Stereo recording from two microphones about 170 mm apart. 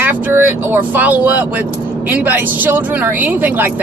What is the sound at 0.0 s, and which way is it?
Speech, 10° right (ahead or behind).